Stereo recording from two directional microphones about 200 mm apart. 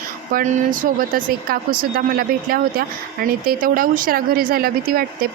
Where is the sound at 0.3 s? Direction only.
40° right (ahead or behind).